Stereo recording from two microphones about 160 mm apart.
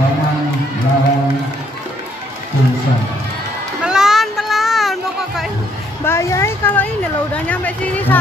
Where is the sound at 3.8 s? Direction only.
5° right (ahead or behind).